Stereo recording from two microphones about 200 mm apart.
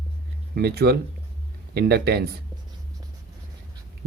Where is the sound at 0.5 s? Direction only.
55° right (ahead or behind).